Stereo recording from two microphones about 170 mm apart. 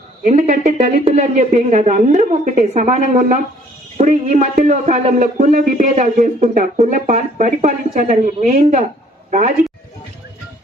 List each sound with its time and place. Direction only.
0.2 s speech: 50° right (ahead or behind)